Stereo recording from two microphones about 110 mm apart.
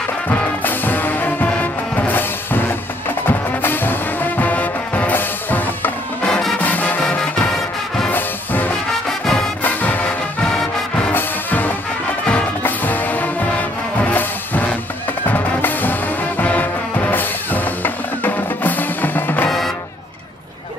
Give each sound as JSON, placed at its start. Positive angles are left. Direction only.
{"t": 0.3, "sound": "music", "side_deg": 15}
{"t": 9.2, "sound": "music", "side_deg": 5}
{"t": 9.6, "sound": "music", "side_deg": 15}
{"t": 11.1, "sound": "music", "side_deg": 15}